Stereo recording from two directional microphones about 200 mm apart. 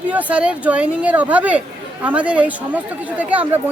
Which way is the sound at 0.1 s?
5° right (ahead or behind).